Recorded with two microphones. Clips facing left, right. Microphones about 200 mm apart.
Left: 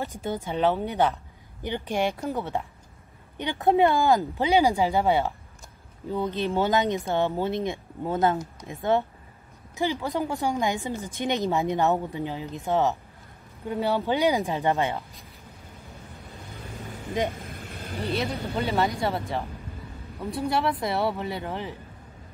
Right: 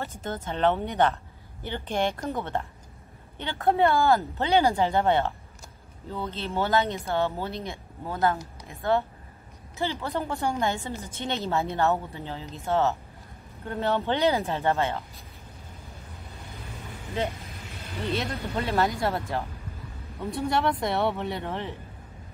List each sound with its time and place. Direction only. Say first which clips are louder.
0.0 s speech: left 3 dB; 15° left (ahead or behind)
17.2 s speech: left 2 dB; 15° left (ahead or behind)
18.1 s speech: left 2 dB; centre (ahead or behind)